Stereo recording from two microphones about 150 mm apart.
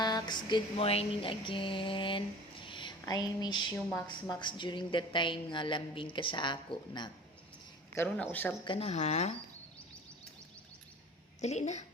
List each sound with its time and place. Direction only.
0.0 s a sound: 30° left (ahead or behind)
3.9 s speech: 25° left (ahead or behind)
7.9 s speech: 10° left (ahead or behind)
8.6 s speech: 35° left (ahead or behind)
11.3 s speech: 50° left (ahead or behind)